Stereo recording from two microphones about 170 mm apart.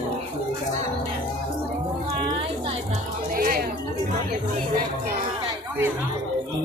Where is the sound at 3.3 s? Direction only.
60° right (ahead or behind).